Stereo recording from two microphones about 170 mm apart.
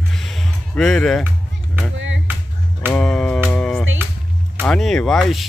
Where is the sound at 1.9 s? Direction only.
90° right.